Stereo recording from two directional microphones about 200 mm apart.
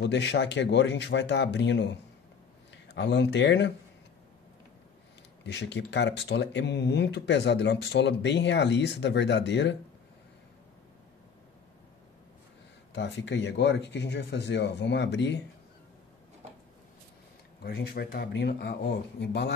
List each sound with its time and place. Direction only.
0.0 s speech: 60° left (ahead or behind)
5.4 s speech: 60° left (ahead or behind)
12.9 s speech: 60° left (ahead or behind)
17.6 s speech: 50° left (ahead or behind)